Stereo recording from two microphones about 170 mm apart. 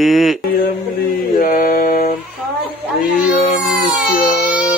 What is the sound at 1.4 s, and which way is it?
Mantra, 55° left (ahead or behind).